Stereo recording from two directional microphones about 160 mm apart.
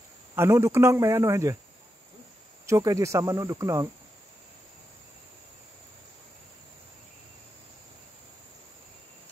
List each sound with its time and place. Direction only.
0.4 s speech: 15° right (ahead or behind)
2.6 s speech: 20° right (ahead or behind)